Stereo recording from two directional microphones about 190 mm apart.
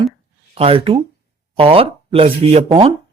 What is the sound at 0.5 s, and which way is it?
Speech, 30° right (ahead or behind).